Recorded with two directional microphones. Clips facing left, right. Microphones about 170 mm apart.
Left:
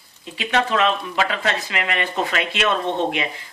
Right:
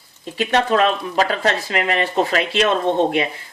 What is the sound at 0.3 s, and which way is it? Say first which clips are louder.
Speech: right 4 dB; 40° right (ahead or behind).